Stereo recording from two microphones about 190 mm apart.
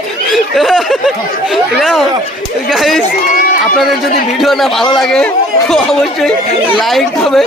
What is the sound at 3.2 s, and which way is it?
Run, 45° left (ahead or behind).